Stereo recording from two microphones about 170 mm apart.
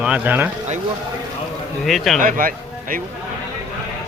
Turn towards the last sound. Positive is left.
turn(degrees=-55)  # may be behind; listen again after turning